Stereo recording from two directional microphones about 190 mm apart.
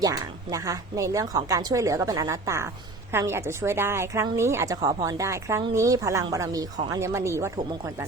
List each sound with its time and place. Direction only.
0.0 s a woman's voice: 15° right (ahead or behind)